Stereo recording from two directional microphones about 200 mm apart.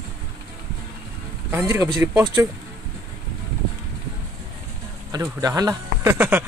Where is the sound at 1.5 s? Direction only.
15° right (ahead or behind).